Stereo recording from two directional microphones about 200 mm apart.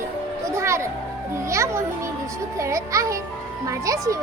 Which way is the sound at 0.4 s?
15° right (ahead or behind).